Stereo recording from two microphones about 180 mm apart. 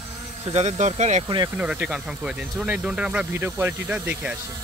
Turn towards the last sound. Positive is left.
turn(degrees=-10)  # may be behind; listen again after turning